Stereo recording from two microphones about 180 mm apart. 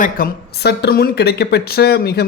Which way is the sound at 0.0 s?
60° left (ahead or behind).